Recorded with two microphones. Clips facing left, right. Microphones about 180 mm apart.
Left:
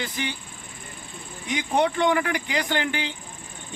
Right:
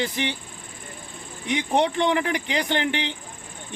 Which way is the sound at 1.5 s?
25° right (ahead or behind).